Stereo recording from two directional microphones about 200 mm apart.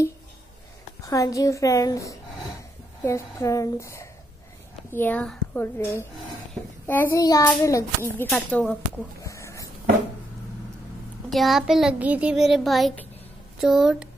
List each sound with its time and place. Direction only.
1.0 s a child's voice: 15° left (ahead or behind)
9.2 s a sound: 15° left (ahead or behind)
11.2 s a child's voice: centre (ahead or behind)